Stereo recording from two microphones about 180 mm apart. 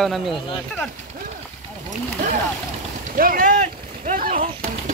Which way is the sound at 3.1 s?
50° right (ahead or behind).